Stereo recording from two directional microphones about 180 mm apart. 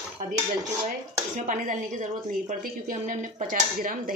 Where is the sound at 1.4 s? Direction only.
45° right (ahead or behind).